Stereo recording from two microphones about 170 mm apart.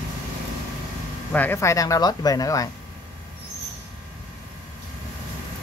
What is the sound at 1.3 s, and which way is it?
Speech, 10° left (ahead or behind).